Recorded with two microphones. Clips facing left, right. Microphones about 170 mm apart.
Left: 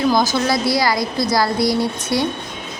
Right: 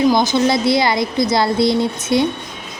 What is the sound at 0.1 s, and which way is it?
A woman's voice, 20° right (ahead or behind).